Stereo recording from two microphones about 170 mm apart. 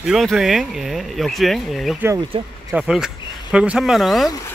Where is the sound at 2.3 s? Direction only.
35° right (ahead or behind).